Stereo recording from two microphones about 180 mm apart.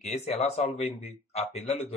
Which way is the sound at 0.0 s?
35° left (ahead or behind).